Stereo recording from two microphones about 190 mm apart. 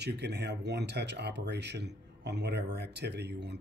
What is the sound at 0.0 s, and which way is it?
Speech, 60° right (ahead or behind).